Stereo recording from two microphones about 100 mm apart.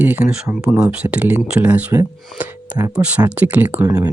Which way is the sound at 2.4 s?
15° right (ahead or behind).